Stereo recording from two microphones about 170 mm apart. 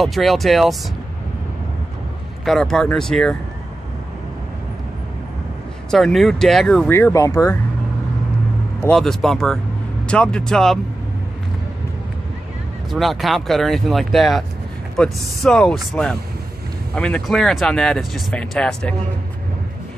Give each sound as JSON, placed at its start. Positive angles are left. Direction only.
{"t": 0.0, "sound": "speech", "side_deg": 0}
{"t": 2.4, "sound": "speech", "side_deg": 0}
{"t": 5.9, "sound": "speech", "side_deg": 0}
{"t": 6.9, "sound": "speech", "side_deg": 15}
{"t": 8.8, "sound": "speech", "side_deg": 5}
{"t": 12.9, "sound": "speech", "side_deg": 0}